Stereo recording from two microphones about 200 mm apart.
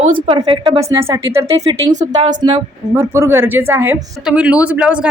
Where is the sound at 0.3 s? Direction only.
25° right (ahead or behind).